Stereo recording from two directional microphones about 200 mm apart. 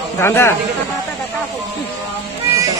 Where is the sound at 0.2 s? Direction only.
10° left (ahead or behind).